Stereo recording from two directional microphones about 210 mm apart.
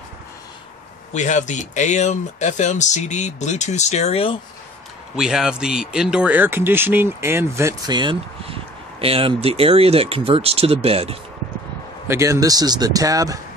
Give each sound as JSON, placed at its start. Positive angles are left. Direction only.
{"t": 1.1, "sound": "speech", "side_deg": 35}
{"t": 5.1, "sound": "speech", "side_deg": -5}
{"t": 12.1, "sound": "speech", "side_deg": -15}